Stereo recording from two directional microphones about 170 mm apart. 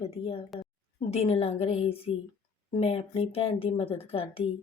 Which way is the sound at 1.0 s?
35° left (ahead or behind).